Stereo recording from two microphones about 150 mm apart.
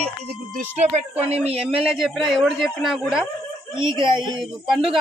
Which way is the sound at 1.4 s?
40° right (ahead or behind).